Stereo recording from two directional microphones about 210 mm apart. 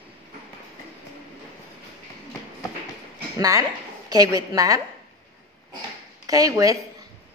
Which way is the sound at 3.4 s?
15° right (ahead or behind).